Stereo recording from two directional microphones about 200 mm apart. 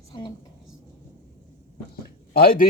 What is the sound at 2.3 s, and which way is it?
Speech, 50° left (ahead or behind).